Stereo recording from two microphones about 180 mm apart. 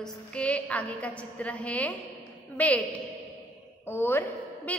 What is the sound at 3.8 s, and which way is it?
A woman's voice, 10° left (ahead or behind).